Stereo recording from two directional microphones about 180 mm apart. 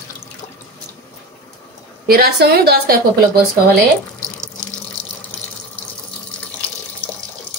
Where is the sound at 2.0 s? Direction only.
60° right (ahead or behind).